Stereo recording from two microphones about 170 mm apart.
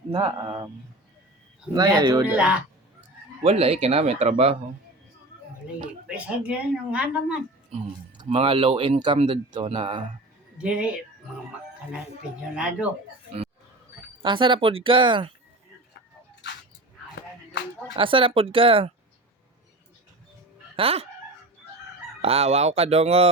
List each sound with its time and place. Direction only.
0.1 s speech: 25° right (ahead or behind)
1.7 s speech: 25° right (ahead or behind)
2.2 s speech: 10° right (ahead or behind)
3.4 s speech: 35° right (ahead or behind)
6.1 s speech: 5° right (ahead or behind)
8.2 s speech: 35° right (ahead or behind)
10.6 s speech: 5° right (ahead or behind)
14.2 s speech: 30° right (ahead or behind)
17.9 s speech: 30° right (ahead or behind)
20.7 s speech: 35° right (ahead or behind)
22.2 s speech: 35° right (ahead or behind)